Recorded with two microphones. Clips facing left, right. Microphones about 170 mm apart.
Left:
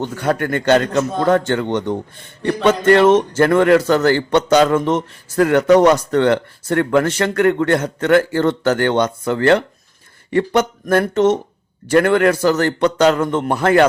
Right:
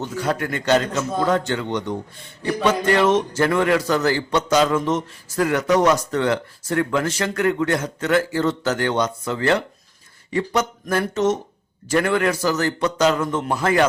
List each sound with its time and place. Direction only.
0.0 s a man's voice: 60° left (ahead or behind)